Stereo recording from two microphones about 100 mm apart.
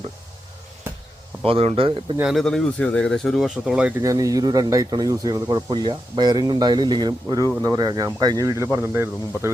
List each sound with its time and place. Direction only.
1.5 s speech: 70° right (ahead or behind)
2.2 s speech: 5° left (ahead or behind)
4.0 s speech: 35° right (ahead or behind)